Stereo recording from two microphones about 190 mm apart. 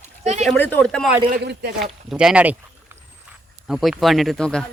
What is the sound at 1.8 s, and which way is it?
Speech, centre (ahead or behind).